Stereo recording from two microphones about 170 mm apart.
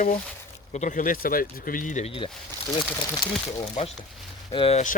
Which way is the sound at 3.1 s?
25° left (ahead or behind).